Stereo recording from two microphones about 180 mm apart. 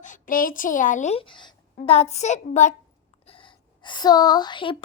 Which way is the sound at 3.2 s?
30° left (ahead or behind).